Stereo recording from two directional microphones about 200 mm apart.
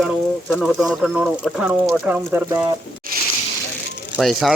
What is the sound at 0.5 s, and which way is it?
Speech, centre (ahead or behind).